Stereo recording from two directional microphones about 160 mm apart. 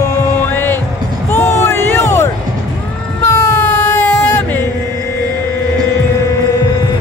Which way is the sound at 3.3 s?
20° left (ahead or behind).